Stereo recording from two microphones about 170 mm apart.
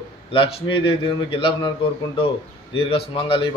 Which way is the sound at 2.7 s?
30° left (ahead or behind).